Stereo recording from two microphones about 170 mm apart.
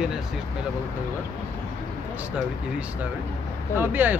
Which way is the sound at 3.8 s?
10° right (ahead or behind).